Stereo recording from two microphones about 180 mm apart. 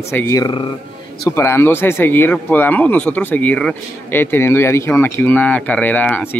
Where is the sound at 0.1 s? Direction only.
15° left (ahead or behind).